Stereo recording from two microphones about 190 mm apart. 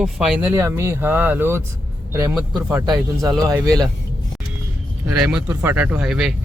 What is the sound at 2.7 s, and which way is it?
Speech, 15° right (ahead or behind).